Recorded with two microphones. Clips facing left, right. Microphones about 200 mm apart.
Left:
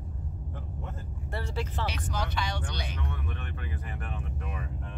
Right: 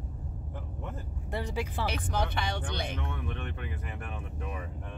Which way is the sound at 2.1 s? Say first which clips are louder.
Right 2 dB; 55° right (ahead or behind).